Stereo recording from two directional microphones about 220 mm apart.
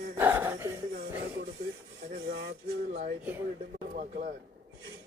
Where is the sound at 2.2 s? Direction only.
45° right (ahead or behind).